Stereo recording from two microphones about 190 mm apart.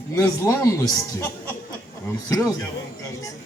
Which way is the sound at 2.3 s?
20° left (ahead or behind).